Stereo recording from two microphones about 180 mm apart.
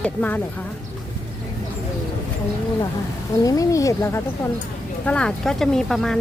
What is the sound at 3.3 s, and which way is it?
Speech, 20° left (ahead or behind).